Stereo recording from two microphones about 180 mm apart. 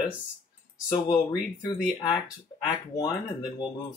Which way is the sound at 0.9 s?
25° left (ahead or behind).